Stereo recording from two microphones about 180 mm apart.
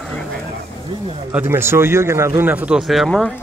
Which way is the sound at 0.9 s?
25° right (ahead or behind).